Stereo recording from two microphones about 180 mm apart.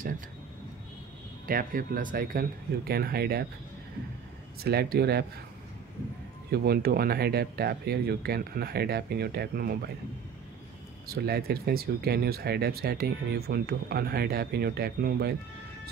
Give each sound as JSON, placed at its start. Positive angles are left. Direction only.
{"t": 1.5, "sound": "speech", "side_deg": -50}
{"t": 4.6, "sound": "speech", "side_deg": -60}
{"t": 6.5, "sound": "speech", "side_deg": -60}
{"t": 11.1, "sound": "speech", "side_deg": -60}